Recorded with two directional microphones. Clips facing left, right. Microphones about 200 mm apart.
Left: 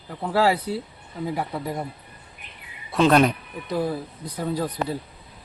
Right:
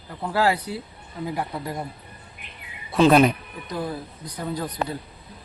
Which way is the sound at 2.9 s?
5° right (ahead or behind).